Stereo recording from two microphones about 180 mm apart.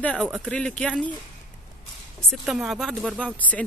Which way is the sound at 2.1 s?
Centre (ahead or behind).